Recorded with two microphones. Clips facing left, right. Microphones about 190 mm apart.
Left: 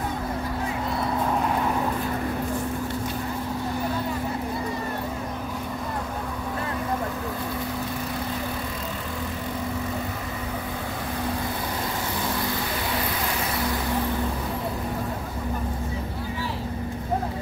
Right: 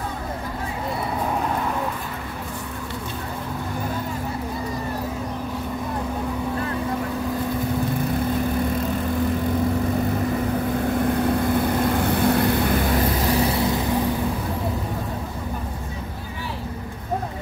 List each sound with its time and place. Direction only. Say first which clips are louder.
11.4 s vehicle: right 9 dB; 55° right (ahead or behind)